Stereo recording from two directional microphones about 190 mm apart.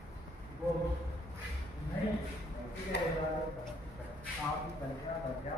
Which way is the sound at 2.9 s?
65° left (ahead or behind).